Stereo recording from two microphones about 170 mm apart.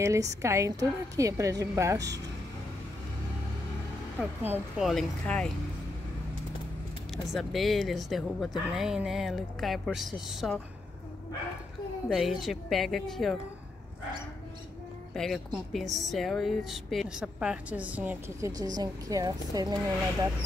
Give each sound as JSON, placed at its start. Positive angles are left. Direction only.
{"t": 0.0, "sound": "a woman's voice", "side_deg": -20}
{"t": 4.4, "sound": "speech", "side_deg": -10}
{"t": 4.8, "sound": "speech", "side_deg": 0}
{"t": 7.3, "sound": "speech", "side_deg": 0}
{"t": 12.1, "sound": "speech", "side_deg": 0}
{"t": 15.1, "sound": "speech", "side_deg": 0}
{"t": 18.6, "sound": "a woman's voice", "side_deg": -20}